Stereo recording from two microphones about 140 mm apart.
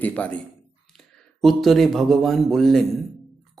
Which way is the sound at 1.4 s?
Centre (ahead or behind).